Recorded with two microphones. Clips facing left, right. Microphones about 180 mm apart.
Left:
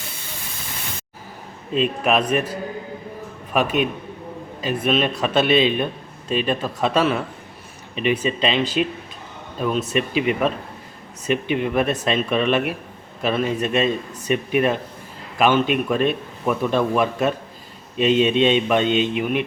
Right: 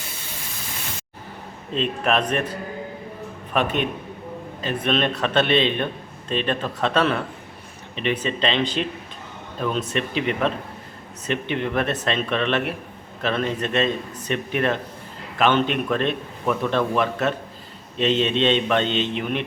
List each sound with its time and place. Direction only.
1.7 s a man's voice: 10° left (ahead or behind)